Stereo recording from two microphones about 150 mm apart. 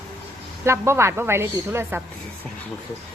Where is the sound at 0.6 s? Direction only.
20° right (ahead or behind).